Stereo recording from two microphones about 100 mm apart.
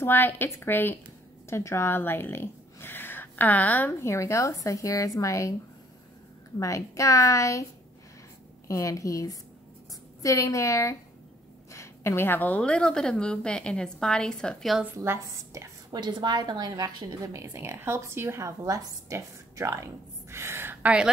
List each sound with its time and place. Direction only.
0.0 s a woman's voice: 20° left (ahead or behind)
4.1 s a woman's voice: 30° left (ahead or behind)
6.6 s a woman's voice: 30° left (ahead or behind)
8.6 s a woman's voice: 35° left (ahead or behind); by 14.8 s 5° left (ahead or behind)
15.0 s speech: 30° right (ahead or behind)
15.9 s a woman's voice: 50° right (ahead or behind)
17.3 s a woman's voice: 30° right (ahead or behind)